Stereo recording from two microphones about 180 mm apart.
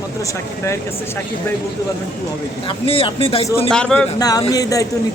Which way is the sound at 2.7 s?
30° left (ahead or behind).